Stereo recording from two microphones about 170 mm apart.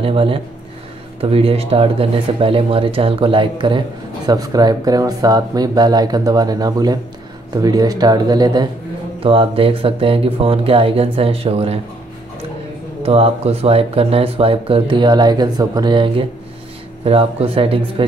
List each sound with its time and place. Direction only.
0.0 s speech: 35° right (ahead or behind)
13.0 s speech: 35° right (ahead or behind)